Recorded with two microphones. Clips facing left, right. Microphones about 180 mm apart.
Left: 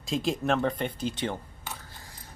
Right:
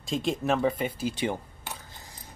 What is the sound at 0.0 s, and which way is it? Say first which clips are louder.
Speech: even; centre (ahead or behind).